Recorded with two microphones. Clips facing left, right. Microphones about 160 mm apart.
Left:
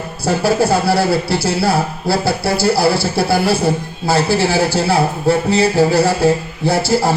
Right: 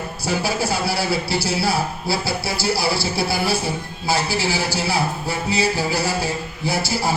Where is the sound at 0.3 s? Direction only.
55° left (ahead or behind).